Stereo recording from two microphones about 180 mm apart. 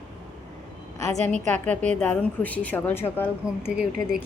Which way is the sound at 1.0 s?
40° right (ahead or behind).